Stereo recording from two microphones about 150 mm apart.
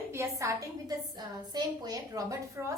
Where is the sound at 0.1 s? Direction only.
20° right (ahead or behind).